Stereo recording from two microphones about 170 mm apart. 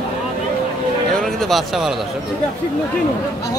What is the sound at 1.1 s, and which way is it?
Speech, 5° left (ahead or behind).